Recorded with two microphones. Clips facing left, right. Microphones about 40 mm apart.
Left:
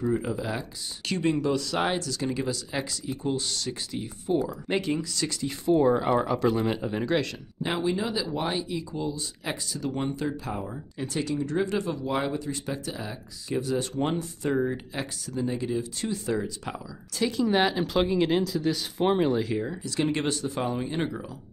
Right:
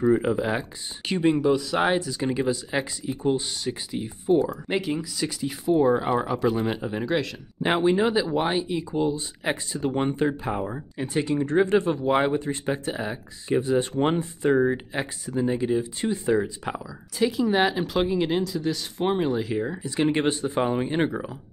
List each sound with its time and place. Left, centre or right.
0.1 s speech: right
4.4 s speech: centre
7.6 s speech: right
16.7 s speech: centre
19.6 s speech: right